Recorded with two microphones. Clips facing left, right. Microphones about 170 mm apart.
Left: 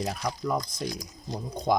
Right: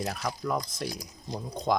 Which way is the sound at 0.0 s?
Centre (ahead or behind).